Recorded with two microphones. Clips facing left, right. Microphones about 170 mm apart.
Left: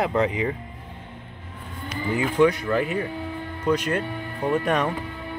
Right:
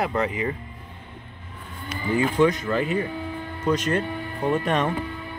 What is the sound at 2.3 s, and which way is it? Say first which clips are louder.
Speech: left 4 dB; 10° left (ahead or behind).